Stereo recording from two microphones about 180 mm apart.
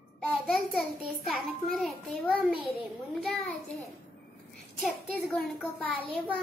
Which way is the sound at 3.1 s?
Centre (ahead or behind).